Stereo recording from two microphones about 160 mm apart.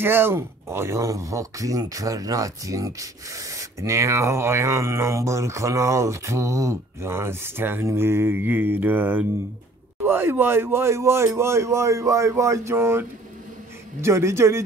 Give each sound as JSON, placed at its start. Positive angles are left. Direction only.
{"t": 0.0, "sound": "speech", "side_deg": -15}
{"t": 14.0, "sound": "speech", "side_deg": -15}